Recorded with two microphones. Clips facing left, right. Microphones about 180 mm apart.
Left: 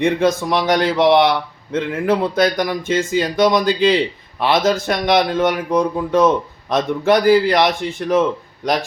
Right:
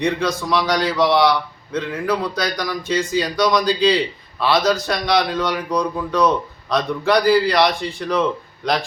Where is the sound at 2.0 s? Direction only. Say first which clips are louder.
Left 5 dB; 25° left (ahead or behind).